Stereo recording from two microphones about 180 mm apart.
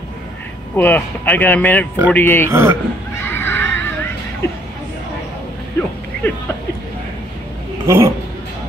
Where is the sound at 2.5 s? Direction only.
15° right (ahead or behind).